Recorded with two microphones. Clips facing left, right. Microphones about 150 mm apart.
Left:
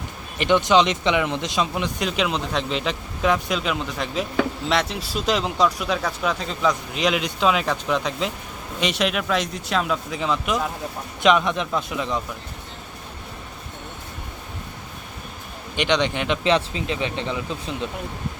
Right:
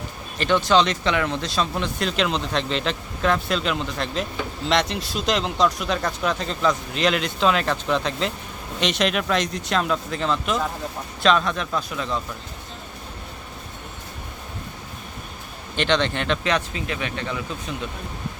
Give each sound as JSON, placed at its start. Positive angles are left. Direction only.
{"t": 0.3, "sound": "speech", "side_deg": 15}
{"t": 15.7, "sound": "speech", "side_deg": 15}
{"t": 16.4, "sound": "speech", "side_deg": 25}